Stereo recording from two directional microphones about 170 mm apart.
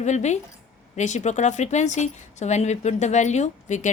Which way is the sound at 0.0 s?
40° left (ahead or behind).